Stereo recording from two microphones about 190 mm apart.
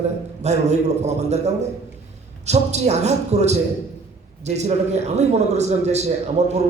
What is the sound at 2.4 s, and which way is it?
A man's voice, 35° right (ahead or behind).